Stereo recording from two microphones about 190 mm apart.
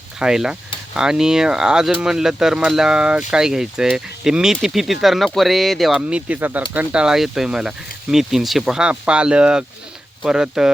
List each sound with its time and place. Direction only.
0.2 s speech: 5° right (ahead or behind)